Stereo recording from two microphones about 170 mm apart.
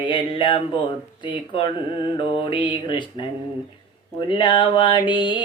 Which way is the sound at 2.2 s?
25° left (ahead or behind).